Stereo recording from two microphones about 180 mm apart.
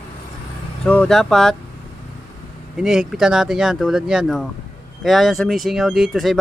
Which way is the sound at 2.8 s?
5° right (ahead or behind).